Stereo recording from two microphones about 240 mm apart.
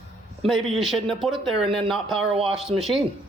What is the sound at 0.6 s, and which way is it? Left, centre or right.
Speech, centre.